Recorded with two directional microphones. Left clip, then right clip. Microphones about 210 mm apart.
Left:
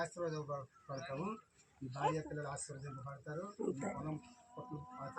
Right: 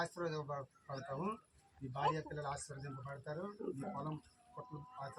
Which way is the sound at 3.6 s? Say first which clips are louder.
Left 4 dB; 50° left (ahead or behind).